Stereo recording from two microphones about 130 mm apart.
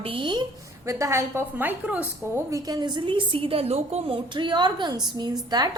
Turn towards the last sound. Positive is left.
turn(degrees=-30)  # may be behind; listen again after turning